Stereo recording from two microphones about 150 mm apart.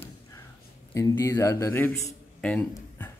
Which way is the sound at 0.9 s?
20° left (ahead or behind).